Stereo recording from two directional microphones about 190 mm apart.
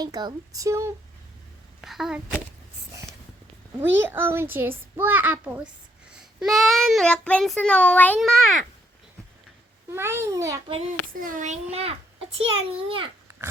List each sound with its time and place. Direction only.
0.0 s a child's voice: 20° right (ahead or behind)
1.8 s a child's voice: centre (ahead or behind)
3.8 s a child's voice: 10° right (ahead or behind)
9.9 s a child's voice: 15° right (ahead or behind)
11.1 s a child's voice: 45° right (ahead or behind); by 13.1 s 30° right (ahead or behind)